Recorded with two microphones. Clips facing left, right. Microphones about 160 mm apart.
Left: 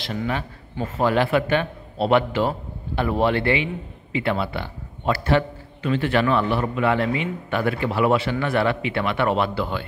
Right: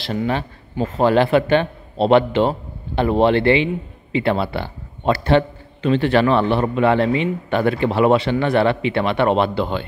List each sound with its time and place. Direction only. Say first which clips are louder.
0.2 s a man's voice: right 4 dB; 25° right (ahead or behind)